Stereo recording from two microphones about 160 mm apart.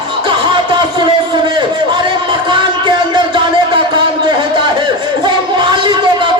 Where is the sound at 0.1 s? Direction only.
30° right (ahead or behind).